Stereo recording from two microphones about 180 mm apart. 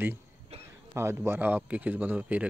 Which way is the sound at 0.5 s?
35° right (ahead or behind).